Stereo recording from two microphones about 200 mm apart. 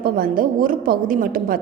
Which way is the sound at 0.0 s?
45° right (ahead or behind).